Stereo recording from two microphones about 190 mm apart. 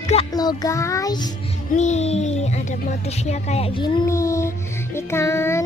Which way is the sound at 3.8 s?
20° left (ahead or behind).